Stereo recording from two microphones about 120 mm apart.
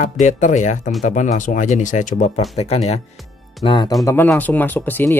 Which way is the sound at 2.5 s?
60° left (ahead or behind).